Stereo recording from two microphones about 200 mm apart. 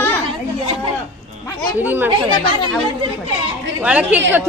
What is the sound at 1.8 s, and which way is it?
Speech, 10° right (ahead or behind).